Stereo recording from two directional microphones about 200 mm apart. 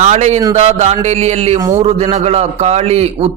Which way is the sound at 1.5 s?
15° right (ahead or behind).